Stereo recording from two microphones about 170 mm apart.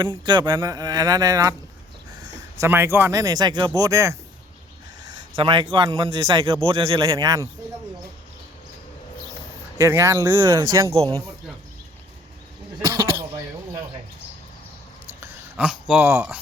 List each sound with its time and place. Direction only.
0.3 s speech: 25° right (ahead or behind)
2.6 s speech: 15° right (ahead or behind)
5.4 s speech: 30° right (ahead or behind)
9.7 s speech: 20° right (ahead or behind)
15.2 s a sound: 5° right (ahead or behind)